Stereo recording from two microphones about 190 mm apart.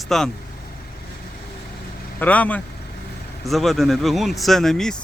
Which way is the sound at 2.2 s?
10° left (ahead or behind).